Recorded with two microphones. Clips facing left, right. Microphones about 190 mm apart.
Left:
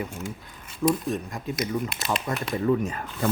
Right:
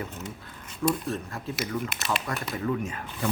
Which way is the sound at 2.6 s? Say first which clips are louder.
Left 6 dB; 35° left (ahead or behind).